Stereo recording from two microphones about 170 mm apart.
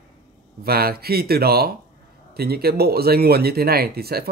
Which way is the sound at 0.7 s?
65° right (ahead or behind).